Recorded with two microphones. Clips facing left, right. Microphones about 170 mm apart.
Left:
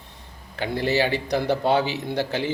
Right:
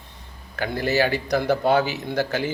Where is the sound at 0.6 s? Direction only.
25° left (ahead or behind).